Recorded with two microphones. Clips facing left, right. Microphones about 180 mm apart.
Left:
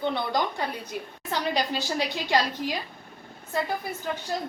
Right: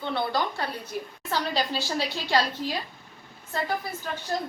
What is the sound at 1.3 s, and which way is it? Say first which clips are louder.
A woman's voice: left 1 dB; 15° left (ahead or behind).